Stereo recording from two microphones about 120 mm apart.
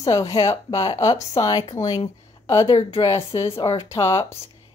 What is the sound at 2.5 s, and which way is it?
Speech, 45° left (ahead or behind).